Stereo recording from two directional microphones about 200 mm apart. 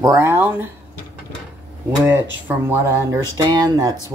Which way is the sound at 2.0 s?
15° right (ahead or behind).